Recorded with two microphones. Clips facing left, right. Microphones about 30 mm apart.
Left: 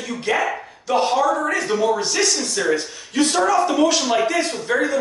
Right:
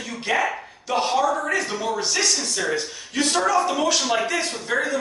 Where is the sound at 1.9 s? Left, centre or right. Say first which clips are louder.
Left 2 dB; centre.